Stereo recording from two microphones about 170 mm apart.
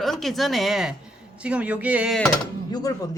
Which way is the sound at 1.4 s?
5° right (ahead or behind).